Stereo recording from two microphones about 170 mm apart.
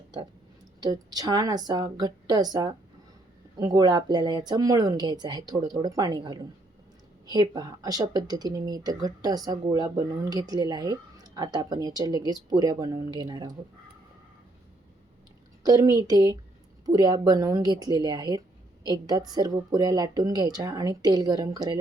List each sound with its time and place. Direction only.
0.8 s speech: 20° right (ahead or behind)
15.6 s speech: 20° right (ahead or behind)